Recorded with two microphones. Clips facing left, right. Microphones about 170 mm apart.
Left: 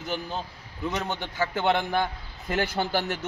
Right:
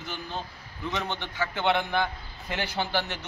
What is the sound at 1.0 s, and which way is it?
A man's voice, 40° left (ahead or behind).